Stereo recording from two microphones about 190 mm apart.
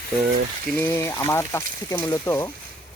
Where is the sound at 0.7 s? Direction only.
10° left (ahead or behind).